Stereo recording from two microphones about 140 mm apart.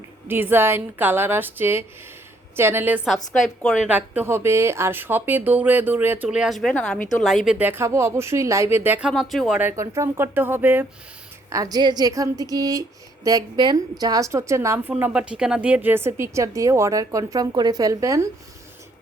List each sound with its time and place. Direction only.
0.3 s speech: 15° right (ahead or behind)
3.4 s a woman's voice: centre (ahead or behind)
3.8 s speech: 10° right (ahead or behind)
9.6 s a woman's voice: 15° right (ahead or behind)